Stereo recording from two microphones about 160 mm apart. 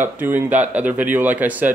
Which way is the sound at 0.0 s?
10° right (ahead or behind).